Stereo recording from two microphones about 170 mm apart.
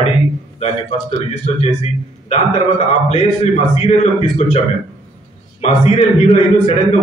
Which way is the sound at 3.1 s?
40° left (ahead or behind).